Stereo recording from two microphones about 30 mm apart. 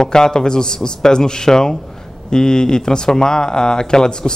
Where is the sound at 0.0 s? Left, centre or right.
Left.